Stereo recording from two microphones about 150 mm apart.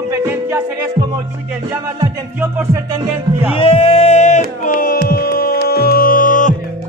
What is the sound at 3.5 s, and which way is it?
Music, 40° left (ahead or behind).